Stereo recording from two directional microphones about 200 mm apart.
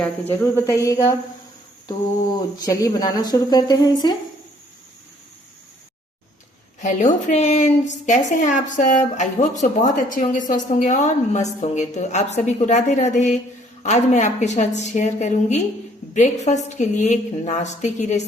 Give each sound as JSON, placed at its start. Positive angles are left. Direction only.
{"t": 0.0, "sound": "speech", "side_deg": 10}
{"t": 2.6, "sound": "speech", "side_deg": 20}
{"t": 6.7, "sound": "a woman's voice", "side_deg": 40}